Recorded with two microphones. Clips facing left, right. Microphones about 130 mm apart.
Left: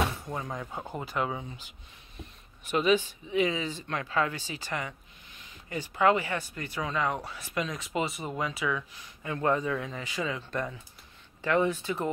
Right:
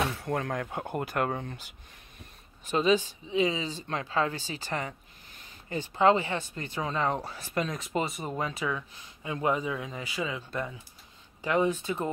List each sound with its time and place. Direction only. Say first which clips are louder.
0.2 s speech: right 5 dB; 65° right (ahead or behind)
2.7 s speech: even; 35° right (ahead or behind)
5.8 s a man's voice: right 2 dB; 25° right (ahead or behind)